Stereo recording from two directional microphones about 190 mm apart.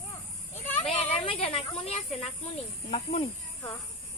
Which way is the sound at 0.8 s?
30° left (ahead or behind).